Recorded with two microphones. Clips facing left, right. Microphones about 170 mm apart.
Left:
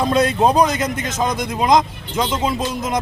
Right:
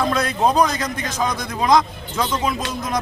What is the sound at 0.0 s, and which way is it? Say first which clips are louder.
A man's voice: left 3 dB; 25° left (ahead or behind).